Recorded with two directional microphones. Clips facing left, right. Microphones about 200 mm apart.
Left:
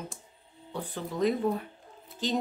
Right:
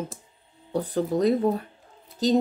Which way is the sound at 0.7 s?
40° right (ahead or behind).